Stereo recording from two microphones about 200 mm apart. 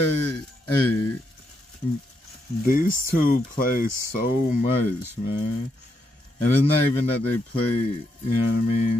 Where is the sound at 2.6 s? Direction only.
45° left (ahead or behind).